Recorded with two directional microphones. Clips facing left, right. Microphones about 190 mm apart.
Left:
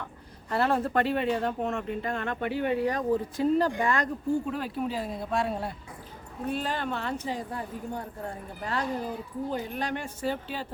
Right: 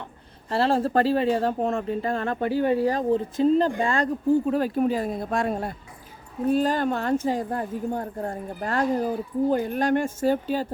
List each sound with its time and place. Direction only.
0.5 s speech: 30° right (ahead or behind)